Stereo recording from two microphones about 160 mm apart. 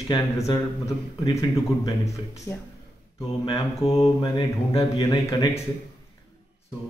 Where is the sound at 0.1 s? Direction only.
20° left (ahead or behind).